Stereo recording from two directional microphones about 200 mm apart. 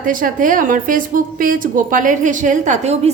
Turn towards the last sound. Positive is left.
turn(degrees=-35)  # may be behind; listen again after turning